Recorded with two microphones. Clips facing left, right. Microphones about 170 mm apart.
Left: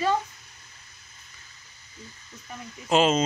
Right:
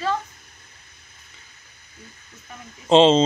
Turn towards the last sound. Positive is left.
turn(degrees=-30)  # may be behind; listen again after turning